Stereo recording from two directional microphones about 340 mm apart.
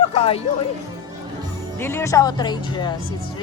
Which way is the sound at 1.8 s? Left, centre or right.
Centre.